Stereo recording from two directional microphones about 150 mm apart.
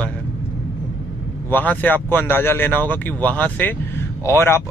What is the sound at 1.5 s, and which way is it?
Speech, 10° left (ahead or behind).